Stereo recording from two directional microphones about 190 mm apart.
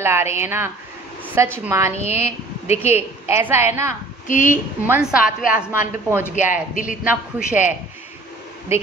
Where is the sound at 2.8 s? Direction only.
10° right (ahead or behind).